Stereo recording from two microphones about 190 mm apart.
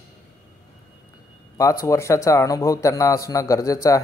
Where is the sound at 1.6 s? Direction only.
15° left (ahead or behind).